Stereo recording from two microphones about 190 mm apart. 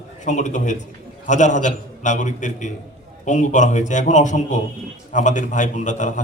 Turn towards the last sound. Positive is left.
turn(degrees=40)  # may be behind; listen again after turning